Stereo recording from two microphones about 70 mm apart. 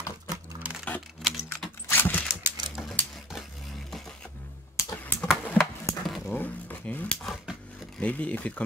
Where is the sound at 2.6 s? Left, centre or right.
Centre.